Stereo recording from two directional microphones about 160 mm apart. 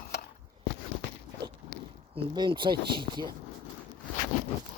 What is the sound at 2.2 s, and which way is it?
Speech, 30° right (ahead or behind).